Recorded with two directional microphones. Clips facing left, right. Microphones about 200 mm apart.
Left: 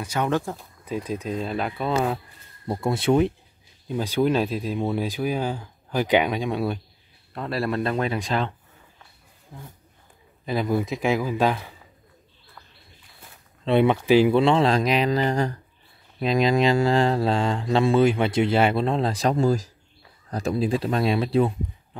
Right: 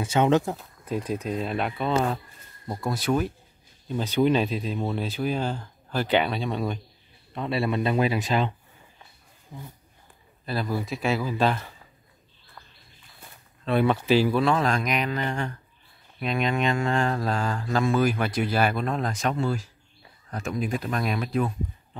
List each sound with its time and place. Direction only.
0.0 s speech: 25° right (ahead or behind)
0.9 s speech: 10° right (ahead or behind)
2.7 s speech: 25° left (ahead or behind)
3.8 s speech: 10° left (ahead or behind)
7.3 s speech: centre (ahead or behind)
10.4 s speech: 15° left (ahead or behind)
13.7 s speech: 20° left (ahead or behind)